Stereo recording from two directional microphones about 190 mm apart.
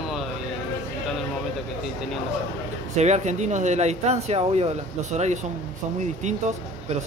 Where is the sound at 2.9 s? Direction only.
35° right (ahead or behind).